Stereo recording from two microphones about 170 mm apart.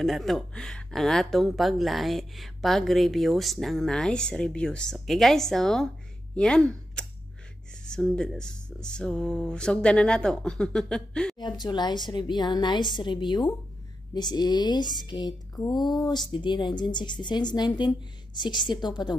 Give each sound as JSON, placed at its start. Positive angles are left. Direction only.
{"t": 0.0, "sound": "speech", "side_deg": 0}
{"t": 11.3, "sound": "speech", "side_deg": 25}